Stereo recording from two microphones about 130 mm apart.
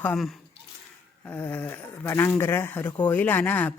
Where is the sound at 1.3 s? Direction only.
15° left (ahead or behind).